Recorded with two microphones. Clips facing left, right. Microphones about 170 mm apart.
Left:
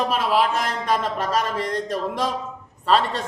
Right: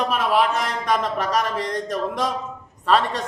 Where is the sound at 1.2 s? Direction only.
30° left (ahead or behind).